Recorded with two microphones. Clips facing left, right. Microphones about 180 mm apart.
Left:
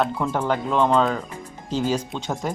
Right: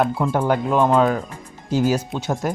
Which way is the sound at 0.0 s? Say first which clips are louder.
Right 3 dB; 10° right (ahead or behind).